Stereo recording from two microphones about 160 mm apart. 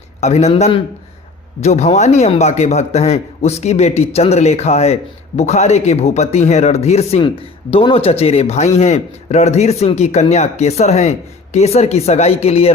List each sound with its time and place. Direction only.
0.2 s speech: 45° left (ahead or behind)